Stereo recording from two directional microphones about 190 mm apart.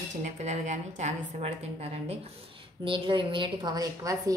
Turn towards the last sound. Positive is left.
turn(degrees=-20)  # may be behind; listen again after turning